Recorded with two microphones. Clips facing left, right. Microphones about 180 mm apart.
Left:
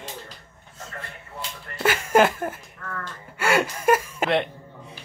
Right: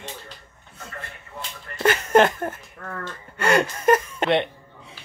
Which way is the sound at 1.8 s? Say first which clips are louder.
Right 2 dB; 5° left (ahead or behind).